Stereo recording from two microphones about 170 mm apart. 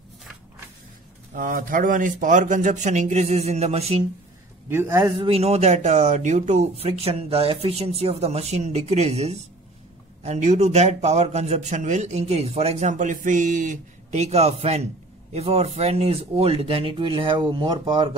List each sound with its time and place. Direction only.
1.3 s a man's voice: 55° right (ahead or behind); by 4.0 s 35° right (ahead or behind)
4.6 s a man's voice: 15° right (ahead or behind)
5.2 s a man's voice: 35° right (ahead or behind)